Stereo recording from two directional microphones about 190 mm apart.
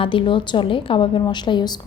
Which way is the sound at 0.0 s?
25° left (ahead or behind).